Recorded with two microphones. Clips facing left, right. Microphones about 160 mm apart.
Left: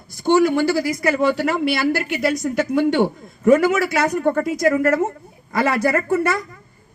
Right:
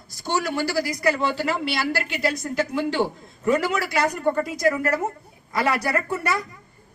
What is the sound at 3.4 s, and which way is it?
A woman's voice, 50° left (ahead or behind).